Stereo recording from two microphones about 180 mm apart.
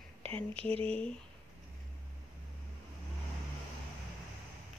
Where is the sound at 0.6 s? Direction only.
35° right (ahead or behind).